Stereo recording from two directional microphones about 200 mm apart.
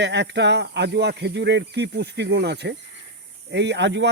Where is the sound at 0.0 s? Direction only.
60° right (ahead or behind).